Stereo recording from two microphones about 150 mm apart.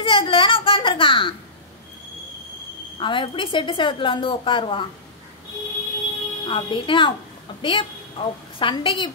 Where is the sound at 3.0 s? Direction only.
35° left (ahead or behind).